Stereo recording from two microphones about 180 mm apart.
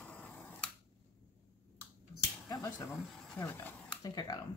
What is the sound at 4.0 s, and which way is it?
Speech, 20° left (ahead or behind).